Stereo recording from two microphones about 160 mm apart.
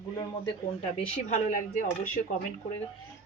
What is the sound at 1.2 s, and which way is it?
Speech, 50° left (ahead or behind).